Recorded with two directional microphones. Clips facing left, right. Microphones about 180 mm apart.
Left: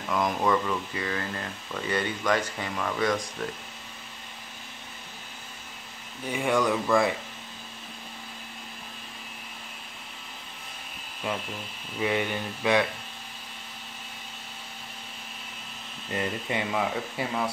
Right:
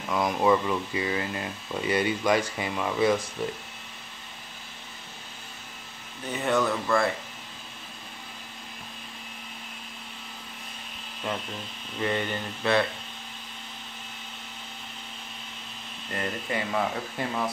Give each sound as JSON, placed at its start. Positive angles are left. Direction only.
{"t": 0.1, "sound": "speech", "side_deg": -5}
{"t": 6.2, "sound": "speech", "side_deg": 10}
{"t": 11.3, "sound": "speech", "side_deg": 5}
{"t": 16.1, "sound": "speech", "side_deg": 20}
{"t": 16.7, "sound": "speech", "side_deg": 5}